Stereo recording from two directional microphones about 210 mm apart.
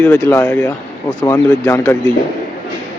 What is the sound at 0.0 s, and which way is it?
Speech, 10° left (ahead or behind).